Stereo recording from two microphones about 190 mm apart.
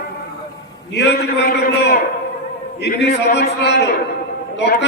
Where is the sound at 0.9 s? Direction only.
60° left (ahead or behind).